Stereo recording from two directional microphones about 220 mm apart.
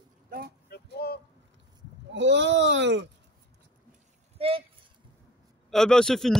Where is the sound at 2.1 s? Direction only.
55° right (ahead or behind).